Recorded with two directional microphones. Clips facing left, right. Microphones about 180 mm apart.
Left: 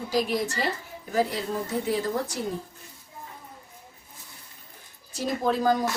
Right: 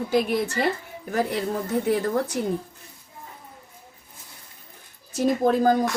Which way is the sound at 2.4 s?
60° right (ahead or behind).